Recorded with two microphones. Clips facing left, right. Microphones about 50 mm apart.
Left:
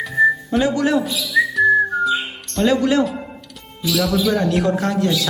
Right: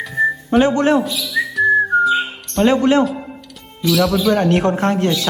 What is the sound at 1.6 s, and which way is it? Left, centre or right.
Whistling, centre.